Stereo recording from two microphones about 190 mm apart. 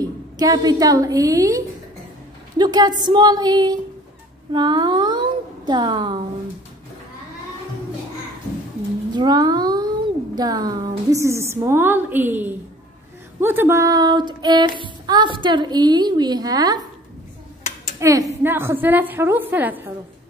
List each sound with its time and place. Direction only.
0.0 s a woman's voice: 20° right (ahead or behind)
9.1 s a child's voice: 20° right (ahead or behind)
17.9 s a woman's voice: 15° right (ahead or behind)